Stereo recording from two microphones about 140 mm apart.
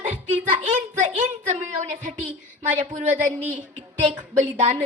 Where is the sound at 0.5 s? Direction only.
60° right (ahead or behind).